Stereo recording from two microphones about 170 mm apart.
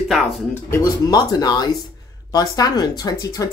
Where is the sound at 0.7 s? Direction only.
25° left (ahead or behind).